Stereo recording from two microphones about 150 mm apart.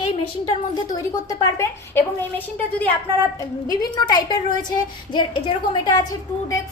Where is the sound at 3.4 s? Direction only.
25° left (ahead or behind).